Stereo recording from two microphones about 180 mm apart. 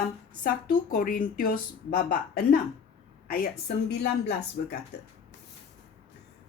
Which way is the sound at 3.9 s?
65° left (ahead or behind).